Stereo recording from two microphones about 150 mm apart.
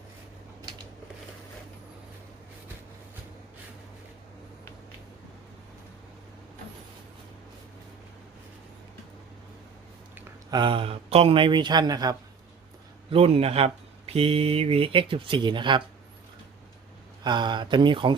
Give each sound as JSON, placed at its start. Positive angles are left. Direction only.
{"t": 10.5, "sound": "speech", "side_deg": -35}
{"t": 13.1, "sound": "speech", "side_deg": -40}
{"t": 17.2, "sound": "speech", "side_deg": -30}